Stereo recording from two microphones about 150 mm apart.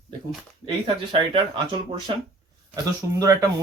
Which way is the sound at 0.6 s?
35° right (ahead or behind).